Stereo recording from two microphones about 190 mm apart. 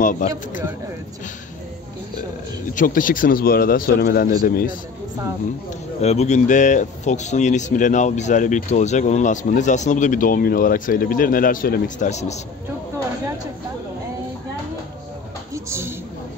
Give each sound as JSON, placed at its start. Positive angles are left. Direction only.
{"t": 0.0, "sound": "speech", "side_deg": 45}
{"t": 2.7, "sound": "speech", "side_deg": 45}
{"t": 5.9, "sound": "speech", "side_deg": 35}
{"t": 15.5, "sound": "a sound", "side_deg": -15}